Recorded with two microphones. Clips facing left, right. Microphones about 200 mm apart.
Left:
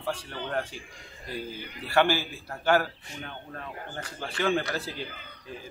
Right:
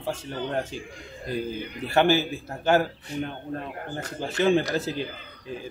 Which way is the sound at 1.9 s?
20° right (ahead or behind).